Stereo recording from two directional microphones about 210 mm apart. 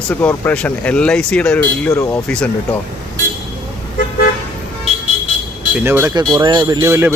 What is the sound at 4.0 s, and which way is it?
Toot, 45° left (ahead or behind).